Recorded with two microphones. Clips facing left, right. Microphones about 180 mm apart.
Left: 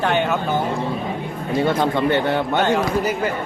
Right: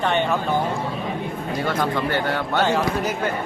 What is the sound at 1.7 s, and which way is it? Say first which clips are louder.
Speech: left 3 dB; 25° left (ahead or behind).